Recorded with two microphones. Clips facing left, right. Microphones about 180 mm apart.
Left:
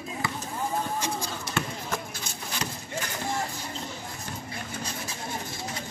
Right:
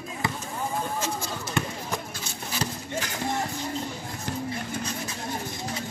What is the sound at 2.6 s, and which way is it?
Clip-clop, 35° right (ahead or behind).